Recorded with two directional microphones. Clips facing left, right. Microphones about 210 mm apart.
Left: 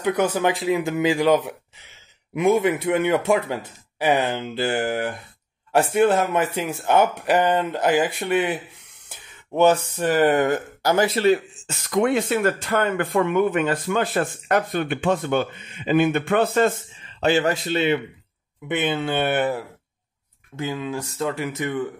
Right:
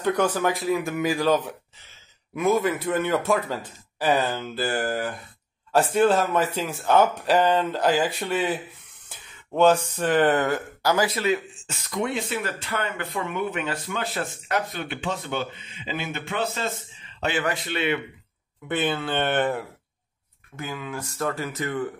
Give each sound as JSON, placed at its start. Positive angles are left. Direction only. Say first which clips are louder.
{"t": 0.2, "sound": "a man's voice", "louder": "left 2 dB", "side_deg": 20}
{"t": 10.0, "sound": "speech", "louder": "left 2 dB", "side_deg": 10}
{"t": 12.1, "sound": "speech", "louder": "left 8 dB", "side_deg": 50}
{"t": 17.2, "sound": "speech", "louder": "left 6 dB", "side_deg": 30}
{"t": 18.7, "sound": "speech", "louder": "left 2 dB", "side_deg": 20}
{"t": 19.1, "sound": "speech", "louder": "left 1 dB", "side_deg": 10}
{"t": 20.5, "sound": "speech", "louder": "left 6 dB", "side_deg": 25}